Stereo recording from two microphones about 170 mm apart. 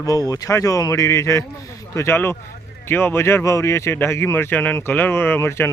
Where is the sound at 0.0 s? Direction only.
20° left (ahead or behind).